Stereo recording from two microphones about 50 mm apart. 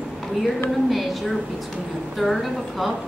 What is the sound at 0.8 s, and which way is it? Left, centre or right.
A woman's voice, centre.